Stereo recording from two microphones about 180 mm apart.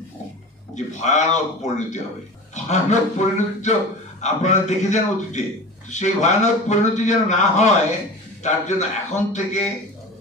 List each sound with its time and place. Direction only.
0.7 s a man's voice: 40° left (ahead or behind)